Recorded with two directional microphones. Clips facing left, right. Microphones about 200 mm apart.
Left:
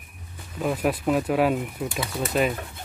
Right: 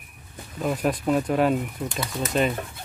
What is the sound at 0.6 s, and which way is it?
Speech, 5° left (ahead or behind).